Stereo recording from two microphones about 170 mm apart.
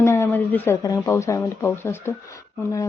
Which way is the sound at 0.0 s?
15° left (ahead or behind).